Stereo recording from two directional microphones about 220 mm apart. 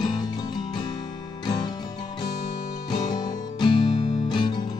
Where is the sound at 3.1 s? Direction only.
20° left (ahead or behind).